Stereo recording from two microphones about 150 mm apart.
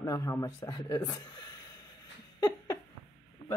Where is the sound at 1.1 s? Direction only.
25° left (ahead or behind).